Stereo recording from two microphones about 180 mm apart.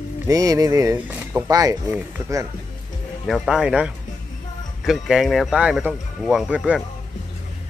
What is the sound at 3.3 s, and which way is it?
Speech, centre (ahead or behind).